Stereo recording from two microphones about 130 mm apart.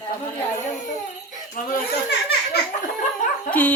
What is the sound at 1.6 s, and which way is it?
Speech, 90° left.